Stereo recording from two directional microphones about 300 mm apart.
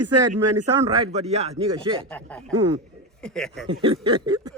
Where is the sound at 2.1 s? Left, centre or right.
Centre.